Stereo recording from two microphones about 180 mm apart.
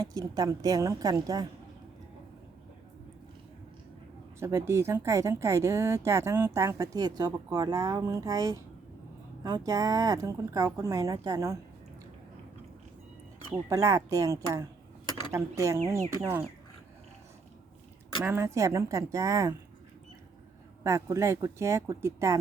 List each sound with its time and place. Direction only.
0.0 s speech: 20° right (ahead or behind)
4.4 s speech: 15° right (ahead or behind)
13.7 s speech: 15° right (ahead or behind)
18.2 s speech: 15° right (ahead or behind)
20.8 s speech: 15° right (ahead or behind)